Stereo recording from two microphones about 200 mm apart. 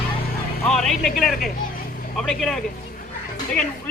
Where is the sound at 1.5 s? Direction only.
45° left (ahead or behind).